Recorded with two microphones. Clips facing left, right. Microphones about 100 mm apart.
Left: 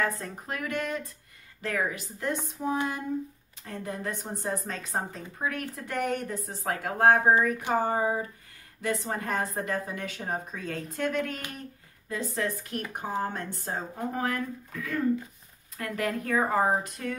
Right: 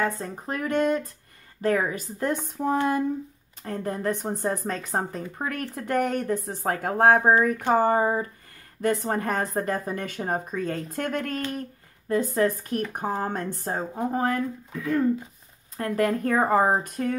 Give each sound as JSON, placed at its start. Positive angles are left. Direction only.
{"t": 0.0, "sound": "speech", "side_deg": -30}
{"t": 13.9, "sound": "speech", "side_deg": -30}
{"t": 15.8, "sound": "speech", "side_deg": -40}